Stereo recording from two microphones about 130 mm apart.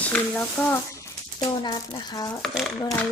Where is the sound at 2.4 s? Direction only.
Centre (ahead or behind).